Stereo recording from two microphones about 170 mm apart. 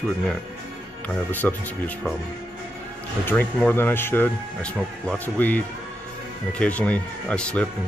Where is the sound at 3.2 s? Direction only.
10° left (ahead or behind).